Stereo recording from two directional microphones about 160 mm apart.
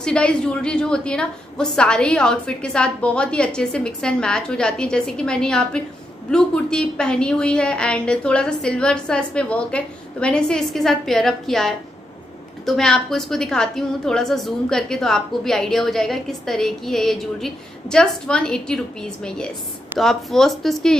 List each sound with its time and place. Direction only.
0.0 s a woman's voice: 5° left (ahead or behind)